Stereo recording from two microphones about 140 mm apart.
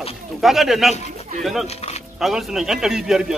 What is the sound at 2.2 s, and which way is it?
A man's voice, centre (ahead or behind).